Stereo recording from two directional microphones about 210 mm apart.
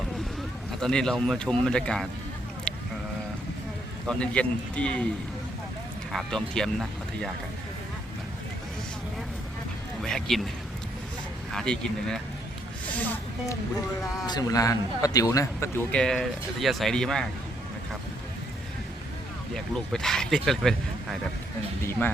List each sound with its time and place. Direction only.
0.8 s speech: 5° left (ahead or behind)
4.0 s speech: 5° left (ahead or behind)
6.1 s speech: centre (ahead or behind)
10.0 s speech: centre (ahead or behind)
11.5 s speech: 5° left (ahead or behind)
12.9 s a sound: 10° left (ahead or behind)
14.3 s a man's voice: 20° left (ahead or behind)
15.9 s speech: 5° left (ahead or behind)
19.5 s speech: centre (ahead or behind)